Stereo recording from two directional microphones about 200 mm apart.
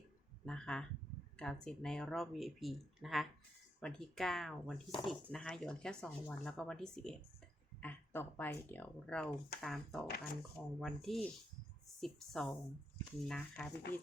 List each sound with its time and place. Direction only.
0.4 s speech: centre (ahead or behind)